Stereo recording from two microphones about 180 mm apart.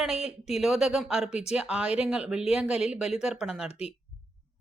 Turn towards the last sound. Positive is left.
turn(degrees=35)  # may be behind; listen again after turning